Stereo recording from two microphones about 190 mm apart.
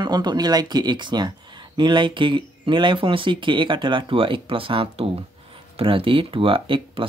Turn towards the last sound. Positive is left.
turn(degrees=-25)  # may be behind; listen again after turning